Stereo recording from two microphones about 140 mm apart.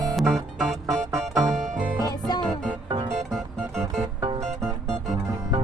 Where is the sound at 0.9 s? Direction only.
25° right (ahead or behind).